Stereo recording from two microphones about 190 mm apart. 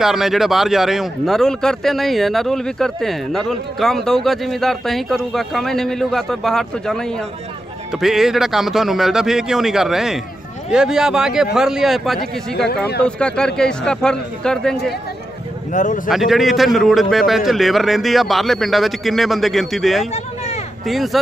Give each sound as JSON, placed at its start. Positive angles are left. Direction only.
{"t": 0.0, "sound": "speech", "side_deg": 0}
{"t": 15.7, "sound": "speech", "side_deg": 40}
{"t": 16.1, "sound": "speech", "side_deg": 0}
{"t": 20.1, "sound": "a sound", "side_deg": 35}
{"t": 20.8, "sound": "speech", "side_deg": 0}